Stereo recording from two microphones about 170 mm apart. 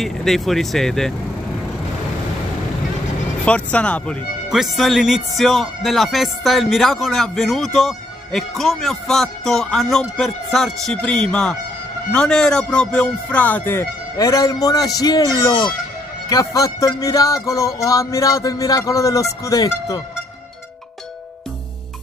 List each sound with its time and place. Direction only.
0.0 s speech: centre (ahead or behind)
3.4 s a man's voice: 5° left (ahead or behind)